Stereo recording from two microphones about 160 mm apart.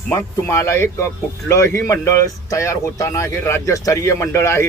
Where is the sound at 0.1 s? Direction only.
15° left (ahead or behind).